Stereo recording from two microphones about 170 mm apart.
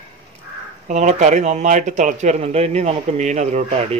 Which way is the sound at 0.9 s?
45° right (ahead or behind).